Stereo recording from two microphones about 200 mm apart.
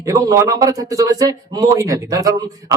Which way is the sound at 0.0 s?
15° right (ahead or behind).